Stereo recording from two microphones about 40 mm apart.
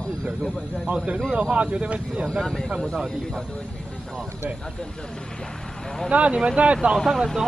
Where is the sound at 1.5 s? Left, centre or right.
Right.